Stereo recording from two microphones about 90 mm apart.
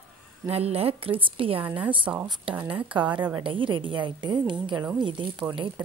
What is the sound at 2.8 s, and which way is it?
A woman's voice, 65° right (ahead or behind).